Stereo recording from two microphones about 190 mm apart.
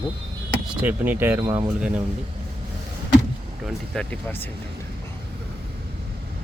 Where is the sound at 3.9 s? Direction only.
5° left (ahead or behind).